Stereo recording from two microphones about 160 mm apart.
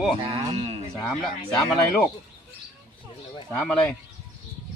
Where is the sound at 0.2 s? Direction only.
35° right (ahead or behind).